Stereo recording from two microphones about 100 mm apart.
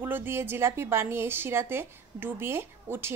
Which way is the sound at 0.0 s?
20° right (ahead or behind).